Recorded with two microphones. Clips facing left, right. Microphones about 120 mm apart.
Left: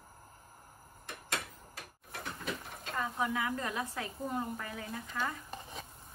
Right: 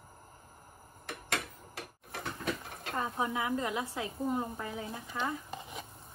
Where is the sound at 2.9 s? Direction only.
25° right (ahead or behind).